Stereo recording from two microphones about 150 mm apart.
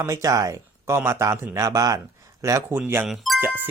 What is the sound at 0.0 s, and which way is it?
Speech, 20° right (ahead or behind).